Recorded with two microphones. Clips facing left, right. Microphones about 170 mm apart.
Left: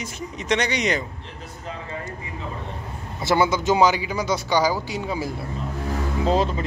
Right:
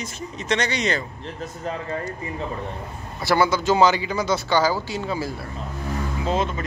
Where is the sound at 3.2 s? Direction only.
20° left (ahead or behind).